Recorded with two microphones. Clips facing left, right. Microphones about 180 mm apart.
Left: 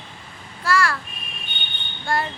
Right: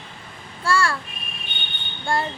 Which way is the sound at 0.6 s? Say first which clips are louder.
Even; 30° right (ahead or behind).